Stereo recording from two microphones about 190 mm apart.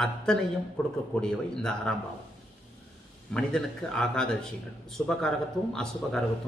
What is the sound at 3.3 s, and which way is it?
Speech, 5° left (ahead or behind).